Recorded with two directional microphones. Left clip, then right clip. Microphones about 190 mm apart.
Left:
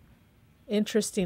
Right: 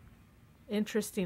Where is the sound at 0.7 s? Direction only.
25° left (ahead or behind).